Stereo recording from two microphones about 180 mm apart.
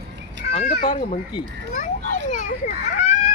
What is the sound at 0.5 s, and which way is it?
Speech, 35° left (ahead or behind).